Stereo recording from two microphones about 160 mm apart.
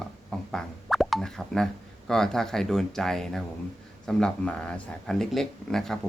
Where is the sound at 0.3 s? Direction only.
Centre (ahead or behind).